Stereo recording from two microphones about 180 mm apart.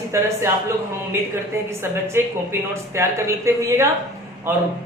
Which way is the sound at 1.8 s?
15° right (ahead or behind).